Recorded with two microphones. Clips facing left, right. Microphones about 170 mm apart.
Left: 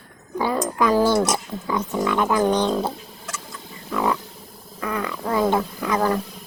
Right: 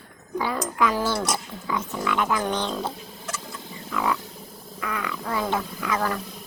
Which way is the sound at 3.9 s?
30° left (ahead or behind).